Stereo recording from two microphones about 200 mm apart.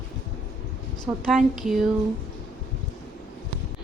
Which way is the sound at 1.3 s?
Centre (ahead or behind).